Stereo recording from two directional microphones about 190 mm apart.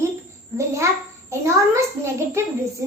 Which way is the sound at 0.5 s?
15° right (ahead or behind).